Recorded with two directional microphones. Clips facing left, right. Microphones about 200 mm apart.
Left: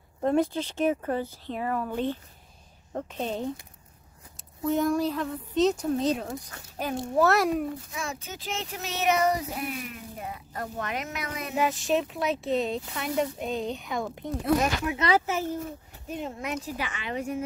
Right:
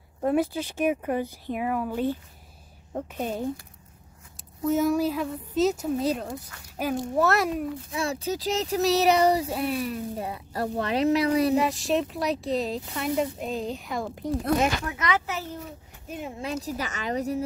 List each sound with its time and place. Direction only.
0.2 s speech: 5° right (ahead or behind)
4.6 s speech: 5° right (ahead or behind)
7.9 s speech: 35° right (ahead or behind)
11.5 s speech: centre (ahead or behind)
15.0 s a child's voice: 30° left (ahead or behind)
16.1 s speech: 10° right (ahead or behind)
16.3 s speech: 35° right (ahead or behind)